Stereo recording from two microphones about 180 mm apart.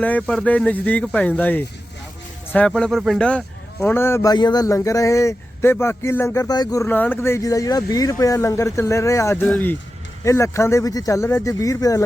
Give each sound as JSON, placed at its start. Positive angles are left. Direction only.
{"t": 0.0, "sound": "speech", "side_deg": 5}
{"t": 6.8, "sound": "speech", "side_deg": 10}